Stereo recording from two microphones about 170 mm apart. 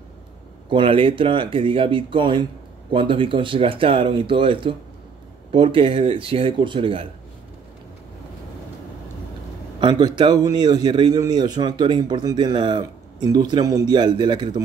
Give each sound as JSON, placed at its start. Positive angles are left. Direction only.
{"t": 0.7, "sound": "speech", "side_deg": -30}
{"t": 9.8, "sound": "a man's voice", "side_deg": -25}